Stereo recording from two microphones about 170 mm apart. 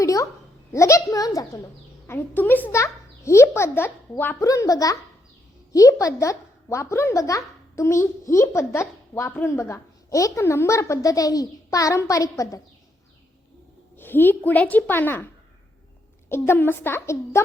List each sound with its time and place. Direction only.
0.0 s a child's voice: 20° left (ahead or behind)
13.9 s a woman's voice: 10° left (ahead or behind)
16.3 s a woman's voice: 15° left (ahead or behind)